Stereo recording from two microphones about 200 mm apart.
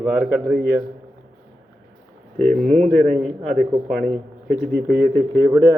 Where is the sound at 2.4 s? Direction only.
5° left (ahead or behind).